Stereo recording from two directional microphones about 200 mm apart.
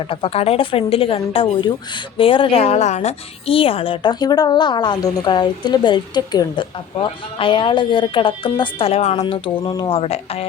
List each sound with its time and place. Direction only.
0.1 s a woman's voice: 30° left (ahead or behind)
9.6 s a woman's voice: 20° left (ahead or behind)